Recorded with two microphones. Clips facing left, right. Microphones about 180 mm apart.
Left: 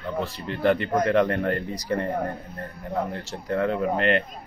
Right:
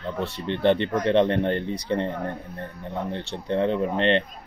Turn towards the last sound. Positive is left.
turn(degrees=-25)  # may be behind; listen again after turning